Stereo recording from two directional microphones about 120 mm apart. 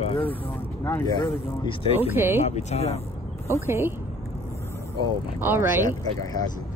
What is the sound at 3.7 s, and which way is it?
Speech, 20° right (ahead or behind).